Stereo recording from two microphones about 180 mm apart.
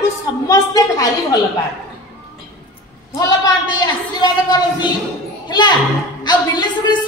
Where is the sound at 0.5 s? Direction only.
20° left (ahead or behind).